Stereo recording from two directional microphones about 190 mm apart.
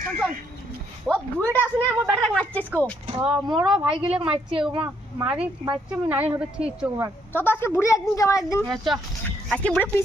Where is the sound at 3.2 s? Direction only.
5° right (ahead or behind).